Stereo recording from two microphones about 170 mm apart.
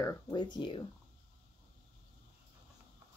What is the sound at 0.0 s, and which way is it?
Speech, 25° left (ahead or behind).